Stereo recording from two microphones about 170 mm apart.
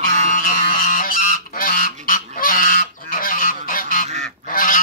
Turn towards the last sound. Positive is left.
turn(degrees=55)  # may be behind; listen again after turning